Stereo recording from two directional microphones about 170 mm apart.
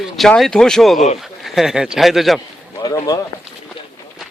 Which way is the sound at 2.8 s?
20° left (ahead or behind).